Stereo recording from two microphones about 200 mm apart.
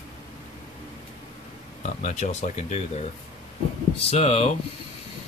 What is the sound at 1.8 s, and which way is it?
Speech, 35° left (ahead or behind).